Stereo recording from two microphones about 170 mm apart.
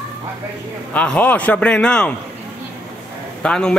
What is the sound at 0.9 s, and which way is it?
A man's voice, 10° left (ahead or behind).